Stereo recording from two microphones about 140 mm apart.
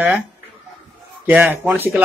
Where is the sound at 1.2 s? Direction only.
10° right (ahead or behind).